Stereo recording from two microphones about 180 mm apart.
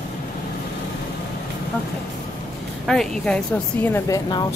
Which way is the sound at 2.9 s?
5° left (ahead or behind).